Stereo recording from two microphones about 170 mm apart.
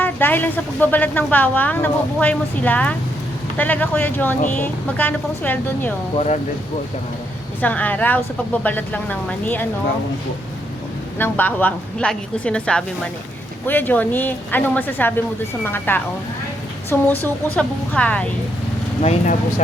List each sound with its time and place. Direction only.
0.0 s speech: 10° left (ahead or behind)
6.1 s speech: 40° left (ahead or behind)
7.6 s speech: 10° left (ahead or behind)
11.2 s speech: 10° left (ahead or behind)
19.0 s speech: 45° left (ahead or behind)